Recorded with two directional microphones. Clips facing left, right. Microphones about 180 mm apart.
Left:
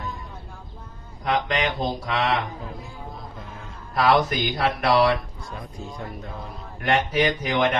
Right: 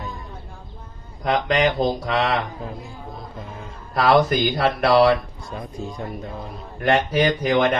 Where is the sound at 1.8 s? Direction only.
40° right (ahead or behind).